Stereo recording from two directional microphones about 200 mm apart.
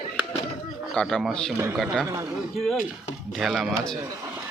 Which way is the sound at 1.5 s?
15° right (ahead or behind).